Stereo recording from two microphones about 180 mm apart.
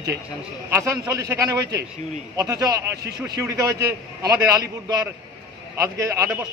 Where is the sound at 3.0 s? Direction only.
60° right (ahead or behind).